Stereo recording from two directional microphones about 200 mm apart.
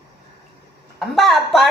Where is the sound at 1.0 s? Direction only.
Centre (ahead or behind).